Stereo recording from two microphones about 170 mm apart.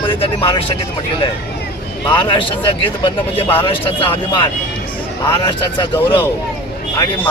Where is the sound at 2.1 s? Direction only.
30° left (ahead or behind).